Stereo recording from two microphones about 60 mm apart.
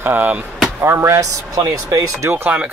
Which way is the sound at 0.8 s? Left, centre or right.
Right.